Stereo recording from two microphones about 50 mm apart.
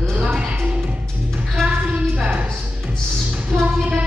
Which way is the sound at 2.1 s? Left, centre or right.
Right.